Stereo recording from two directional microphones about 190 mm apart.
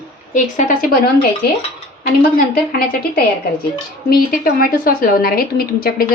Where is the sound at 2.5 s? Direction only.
55° left (ahead or behind).